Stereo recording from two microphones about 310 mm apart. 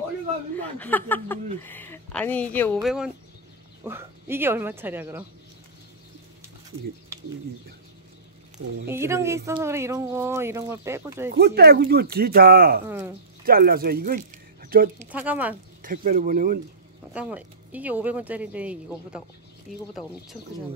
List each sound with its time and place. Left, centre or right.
0.6 s a woman's voice: centre
8.8 s speech: centre
11.2 s speech: right
12.8 s speech: centre
13.5 s speech: right
15.0 s a woman's voice: centre
15.8 s speech: right
17.1 s a woman's voice: centre